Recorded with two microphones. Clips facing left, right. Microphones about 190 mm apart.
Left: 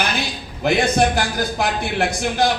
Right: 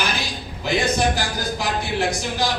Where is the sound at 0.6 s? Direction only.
55° left (ahead or behind).